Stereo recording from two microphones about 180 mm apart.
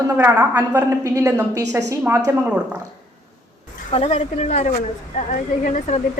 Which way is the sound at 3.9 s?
35° left (ahead or behind).